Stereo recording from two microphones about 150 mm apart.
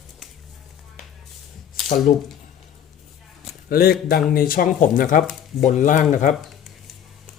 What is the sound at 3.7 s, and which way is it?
Speech, 85° left.